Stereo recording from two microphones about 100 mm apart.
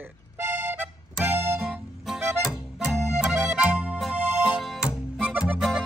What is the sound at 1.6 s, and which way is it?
Music, centre (ahead or behind).